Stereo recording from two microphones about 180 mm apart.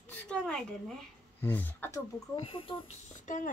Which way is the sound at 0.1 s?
5° left (ahead or behind).